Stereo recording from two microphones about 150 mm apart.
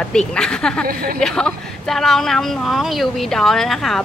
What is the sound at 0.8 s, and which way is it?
Speech, 75° right (ahead or behind).